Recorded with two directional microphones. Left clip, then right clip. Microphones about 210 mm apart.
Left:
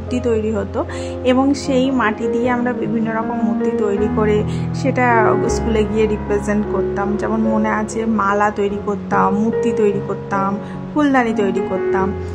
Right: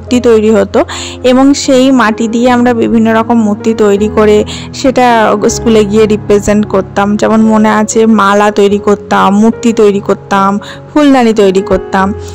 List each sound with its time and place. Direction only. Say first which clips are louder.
0.1 s speech: right 13 dB; 45° right (ahead or behind)